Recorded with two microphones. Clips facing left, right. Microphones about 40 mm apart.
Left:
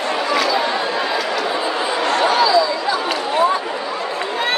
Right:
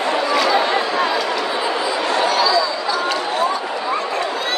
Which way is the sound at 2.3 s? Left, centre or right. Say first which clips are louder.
Left 3 dB; left.